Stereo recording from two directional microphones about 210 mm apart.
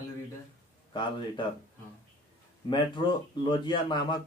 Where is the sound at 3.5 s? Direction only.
20° left (ahead or behind).